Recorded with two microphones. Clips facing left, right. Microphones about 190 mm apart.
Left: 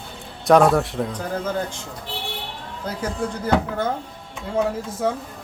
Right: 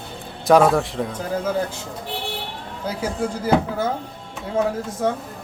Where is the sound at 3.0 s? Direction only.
5° right (ahead or behind).